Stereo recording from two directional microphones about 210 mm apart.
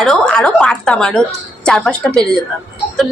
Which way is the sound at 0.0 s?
Centre (ahead or behind).